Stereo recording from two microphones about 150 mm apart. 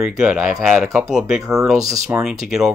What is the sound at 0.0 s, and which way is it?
Speech, 5° right (ahead or behind).